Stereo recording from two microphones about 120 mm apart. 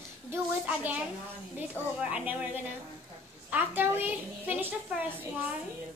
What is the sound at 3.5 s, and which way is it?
A child's voice, 15° right (ahead or behind).